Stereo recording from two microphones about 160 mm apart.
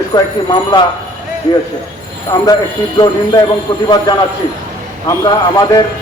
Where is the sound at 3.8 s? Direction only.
25° left (ahead or behind).